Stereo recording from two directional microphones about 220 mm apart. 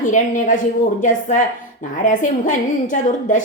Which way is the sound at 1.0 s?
35° left (ahead or behind).